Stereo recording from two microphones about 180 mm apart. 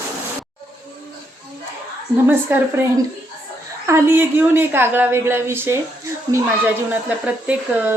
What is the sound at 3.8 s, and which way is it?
A woman's voice, 15° right (ahead or behind).